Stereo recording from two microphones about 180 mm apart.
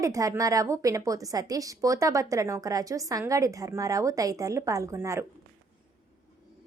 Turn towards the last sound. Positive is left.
turn(degrees=-15)  # may be behind; listen again after turning